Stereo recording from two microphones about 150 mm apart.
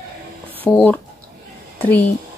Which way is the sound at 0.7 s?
10° left (ahead or behind).